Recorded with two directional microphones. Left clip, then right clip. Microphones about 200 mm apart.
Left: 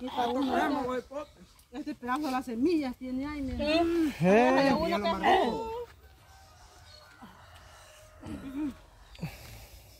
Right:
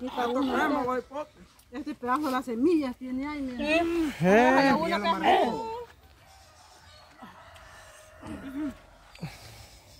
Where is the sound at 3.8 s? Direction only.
15° right (ahead or behind).